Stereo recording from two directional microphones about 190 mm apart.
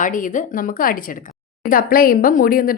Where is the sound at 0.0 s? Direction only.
45° left (ahead or behind).